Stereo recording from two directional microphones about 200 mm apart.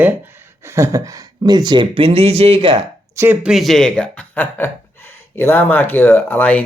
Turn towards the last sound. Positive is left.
turn(degrees=10)  # may be behind; listen again after turning